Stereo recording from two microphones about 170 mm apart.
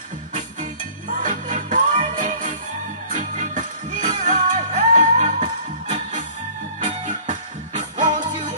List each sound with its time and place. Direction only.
1.2 s music: 50° right (ahead or behind)